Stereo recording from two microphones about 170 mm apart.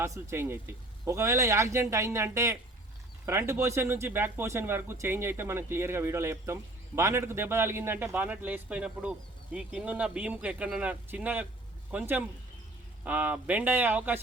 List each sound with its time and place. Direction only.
0.0 s speech: 15° right (ahead or behind)